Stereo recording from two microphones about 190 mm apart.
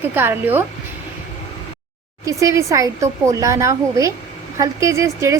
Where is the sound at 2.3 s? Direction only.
15° right (ahead or behind).